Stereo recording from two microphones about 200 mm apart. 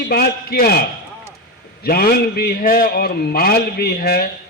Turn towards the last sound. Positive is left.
turn(degrees=50)  # may be behind; listen again after turning